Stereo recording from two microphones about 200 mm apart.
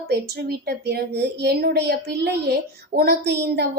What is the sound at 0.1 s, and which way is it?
A woman's voice, 55° right (ahead or behind).